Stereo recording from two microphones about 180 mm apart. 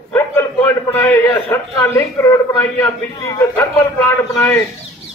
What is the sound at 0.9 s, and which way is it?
A man's voice, 10° left (ahead or behind).